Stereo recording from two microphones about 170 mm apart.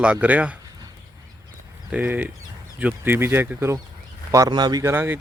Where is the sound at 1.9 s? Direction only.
10° right (ahead or behind).